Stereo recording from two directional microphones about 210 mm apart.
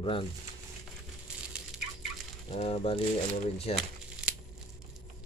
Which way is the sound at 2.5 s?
30° left (ahead or behind).